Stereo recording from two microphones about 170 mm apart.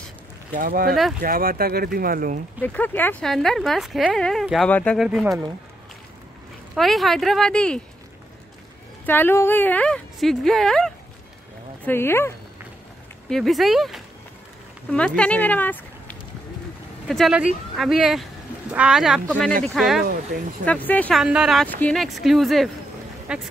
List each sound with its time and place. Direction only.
0.5 s speech: 55° right (ahead or behind)
2.6 s a woman's voice: 10° left (ahead or behind)
6.7 s a woman's voice: centre (ahead or behind)
9.0 s a woman's voice: 10° left (ahead or behind)
11.8 s a woman's voice: 15° left (ahead or behind)
13.3 s a woman's voice: centre (ahead or behind)
17.1 s a woman's voice: 5° right (ahead or behind)
21.2 s a woman's voice: 5° right (ahead or behind)
21.6 s a woman's voice: 10° left (ahead or behind)